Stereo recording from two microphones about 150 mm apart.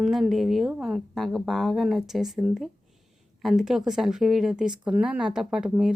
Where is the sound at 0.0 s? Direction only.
Centre (ahead or behind).